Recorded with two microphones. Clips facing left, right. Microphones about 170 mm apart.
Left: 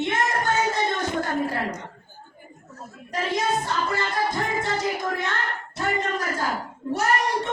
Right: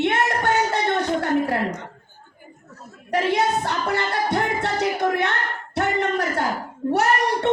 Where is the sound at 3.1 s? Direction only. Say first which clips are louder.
Right 4 dB; 65° right (ahead or behind).